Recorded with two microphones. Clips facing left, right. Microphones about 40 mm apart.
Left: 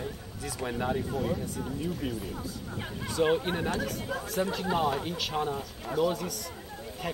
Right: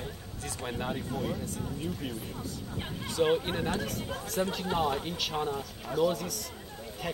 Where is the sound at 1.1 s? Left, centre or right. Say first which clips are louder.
Left 3 dB; centre.